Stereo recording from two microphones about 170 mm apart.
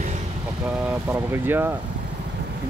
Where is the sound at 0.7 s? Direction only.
10° right (ahead or behind).